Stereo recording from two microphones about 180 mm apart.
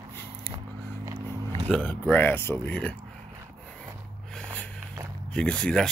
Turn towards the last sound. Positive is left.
turn(degrees=5)  # may be behind; listen again after turning